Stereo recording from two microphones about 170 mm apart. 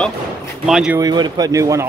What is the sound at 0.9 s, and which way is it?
Speech, 25° right (ahead or behind).